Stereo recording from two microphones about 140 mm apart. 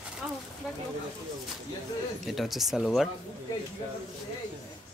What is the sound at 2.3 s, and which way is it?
Speech, centre (ahead or behind).